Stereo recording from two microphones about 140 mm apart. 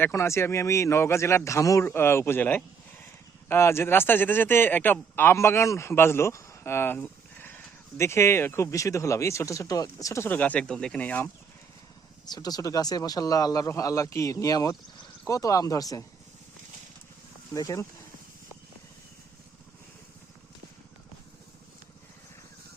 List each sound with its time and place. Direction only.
0.0 s a man's voice: 20° left (ahead or behind)
12.3 s a man's voice: 30° left (ahead or behind)
17.5 s a man's voice: 25° left (ahead or behind)